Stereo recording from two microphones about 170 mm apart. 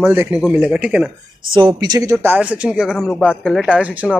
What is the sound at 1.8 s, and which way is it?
Speech, 25° right (ahead or behind).